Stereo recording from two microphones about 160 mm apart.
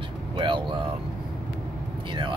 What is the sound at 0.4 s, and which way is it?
Vehicle, 30° right (ahead or behind).